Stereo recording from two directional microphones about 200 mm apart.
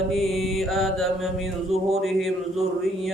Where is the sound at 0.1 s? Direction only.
Centre (ahead or behind).